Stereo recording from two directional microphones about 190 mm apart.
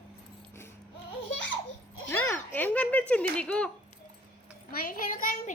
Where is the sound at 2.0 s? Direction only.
10° left (ahead or behind).